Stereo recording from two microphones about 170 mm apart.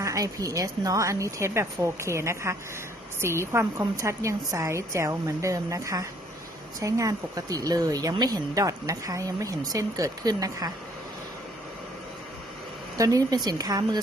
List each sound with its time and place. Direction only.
0.0 s a woman's voice: 20° right (ahead or behind)
13.0 s speech: 20° right (ahead or behind)